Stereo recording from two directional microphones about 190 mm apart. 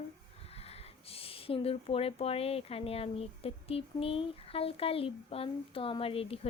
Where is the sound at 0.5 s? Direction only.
35° left (ahead or behind).